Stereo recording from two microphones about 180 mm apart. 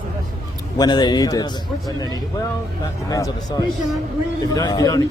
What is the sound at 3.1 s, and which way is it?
Speech, 20° left (ahead or behind).